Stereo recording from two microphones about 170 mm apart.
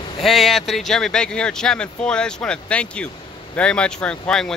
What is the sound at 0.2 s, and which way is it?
Speech, centre (ahead or behind).